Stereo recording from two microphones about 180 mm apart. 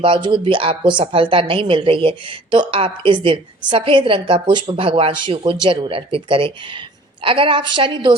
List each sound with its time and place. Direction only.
0.0 s a woman's voice: 25° right (ahead or behind)